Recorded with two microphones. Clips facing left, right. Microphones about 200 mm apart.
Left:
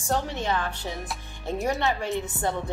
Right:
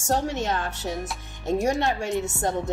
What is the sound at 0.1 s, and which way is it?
A woman's voice, 45° right (ahead or behind).